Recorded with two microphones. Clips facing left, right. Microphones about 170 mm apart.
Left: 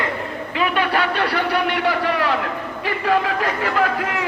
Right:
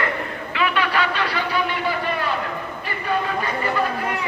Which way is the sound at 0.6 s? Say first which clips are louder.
Left 2 dB; 50° left (ahead or behind).